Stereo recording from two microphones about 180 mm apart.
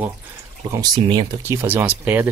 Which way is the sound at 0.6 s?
20° right (ahead or behind).